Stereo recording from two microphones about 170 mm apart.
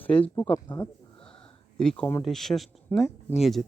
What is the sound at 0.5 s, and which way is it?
Speech, 30° left (ahead or behind).